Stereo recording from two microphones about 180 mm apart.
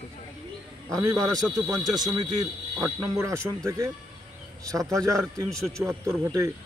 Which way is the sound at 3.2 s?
15° right (ahead or behind).